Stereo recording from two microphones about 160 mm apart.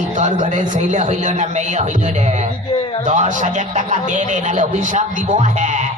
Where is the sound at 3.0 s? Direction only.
50° right (ahead or behind).